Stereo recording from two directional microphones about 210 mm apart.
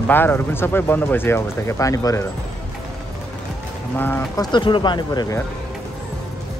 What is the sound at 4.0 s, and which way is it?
Speech, 10° left (ahead or behind).